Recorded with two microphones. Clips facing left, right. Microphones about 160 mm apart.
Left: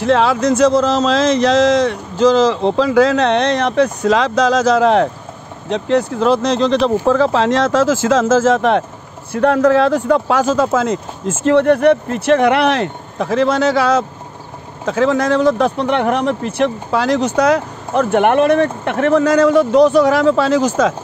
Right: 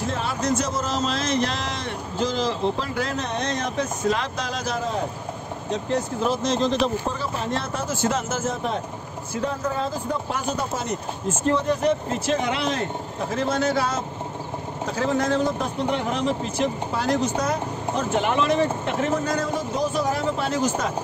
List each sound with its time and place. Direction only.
0.0 s speech: 90° left
9.3 s speech: 75° left (ahead or behind); by 20.9 s 90° left